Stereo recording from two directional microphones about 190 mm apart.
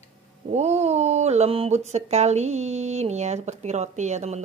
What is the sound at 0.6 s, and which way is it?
Speech, 35° right (ahead or behind).